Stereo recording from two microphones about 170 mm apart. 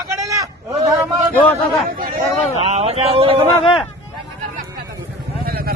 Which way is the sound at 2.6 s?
35° right (ahead or behind).